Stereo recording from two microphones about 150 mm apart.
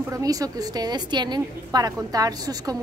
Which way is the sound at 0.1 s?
25° right (ahead or behind).